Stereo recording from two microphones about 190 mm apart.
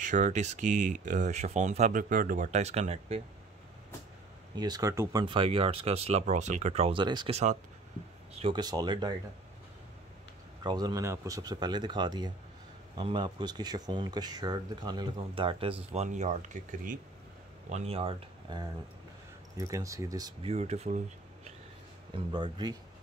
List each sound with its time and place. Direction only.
0.0 s speech: 40° right (ahead or behind)
4.6 s speech: 20° right (ahead or behind)
10.6 s speech: 20° right (ahead or behind)
20.5 s speech: 35° right (ahead or behind)
22.1 s speech: 25° right (ahead or behind)